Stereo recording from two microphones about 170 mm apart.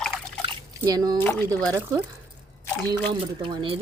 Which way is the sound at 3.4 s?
30° right (ahead or behind).